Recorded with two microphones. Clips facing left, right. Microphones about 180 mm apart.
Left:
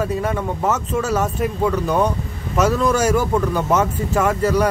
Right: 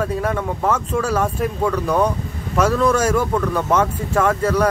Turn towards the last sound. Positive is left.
turn(degrees=5)  # may be behind; listen again after turning